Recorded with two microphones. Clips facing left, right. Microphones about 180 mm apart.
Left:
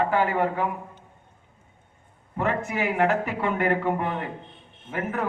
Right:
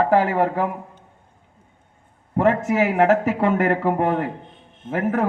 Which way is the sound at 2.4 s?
90° right.